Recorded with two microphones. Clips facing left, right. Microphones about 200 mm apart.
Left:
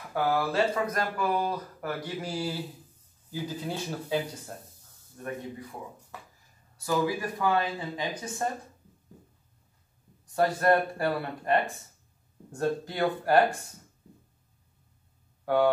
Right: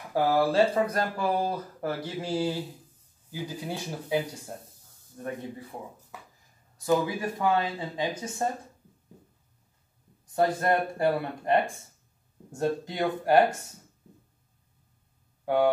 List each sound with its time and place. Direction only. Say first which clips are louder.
0.1 s speech: right 4 dB; 30° right (ahead or behind)
3.3 s speech: left 1 dB; 15° right (ahead or behind)
5.2 s speech: right 1 dB; 25° right (ahead or behind)
6.9 s speech: right 2 dB; 25° right (ahead or behind)
10.3 s speech: left 1 dB; 20° right (ahead or behind)
15.4 s speech: even; 15° right (ahead or behind)